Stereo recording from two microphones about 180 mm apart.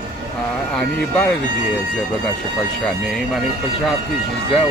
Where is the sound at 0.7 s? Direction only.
5° left (ahead or behind).